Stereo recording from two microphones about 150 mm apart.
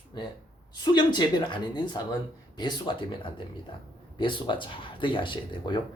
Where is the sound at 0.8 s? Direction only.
30° left (ahead or behind).